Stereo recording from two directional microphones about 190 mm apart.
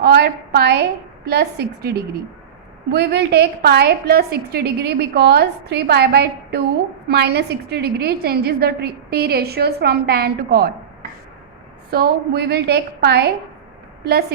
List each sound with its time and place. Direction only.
0.0 s a woman's voice: 60° right (ahead or behind)
2.9 s a woman's voice: 60° right (ahead or behind)
11.9 s a woman's voice: 55° right (ahead or behind)